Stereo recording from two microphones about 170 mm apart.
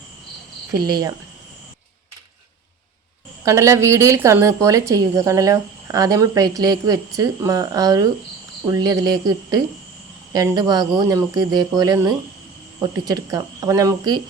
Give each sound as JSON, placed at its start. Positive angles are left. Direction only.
{"t": 0.7, "sound": "a woman's voice", "side_deg": -20}
{"t": 3.4, "sound": "a woman's voice", "side_deg": -15}